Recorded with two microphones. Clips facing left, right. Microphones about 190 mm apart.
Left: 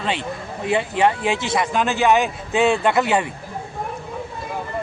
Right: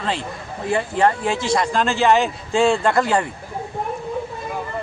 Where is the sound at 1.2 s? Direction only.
75° left (ahead or behind).